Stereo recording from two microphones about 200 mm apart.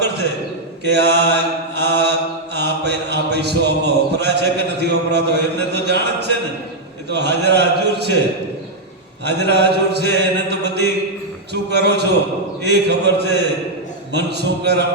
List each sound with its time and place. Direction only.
0.9 s mantra: 55° right (ahead or behind)
9.2 s mantra: 55° right (ahead or behind)